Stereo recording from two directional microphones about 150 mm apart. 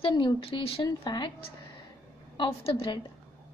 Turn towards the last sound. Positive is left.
turn(degrees=40)  # may be behind; listen again after turning